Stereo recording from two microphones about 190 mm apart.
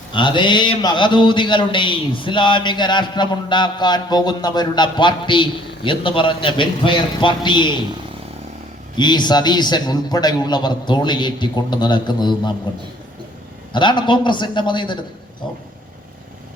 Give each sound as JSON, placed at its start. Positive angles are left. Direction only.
{"t": 0.1, "sound": "a man's voice", "side_deg": 25}
{"t": 9.0, "sound": "a man's voice", "side_deg": 25}
{"t": 13.7, "sound": "a man's voice", "side_deg": 25}